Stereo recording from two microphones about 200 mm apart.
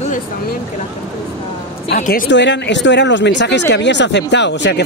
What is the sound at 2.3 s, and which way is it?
Speech, 60° left (ahead or behind).